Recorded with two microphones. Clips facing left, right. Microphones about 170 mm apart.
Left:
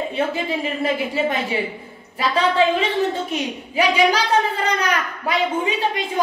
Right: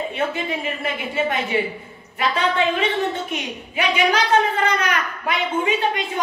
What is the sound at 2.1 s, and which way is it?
A woman's voice, 30° left (ahead or behind).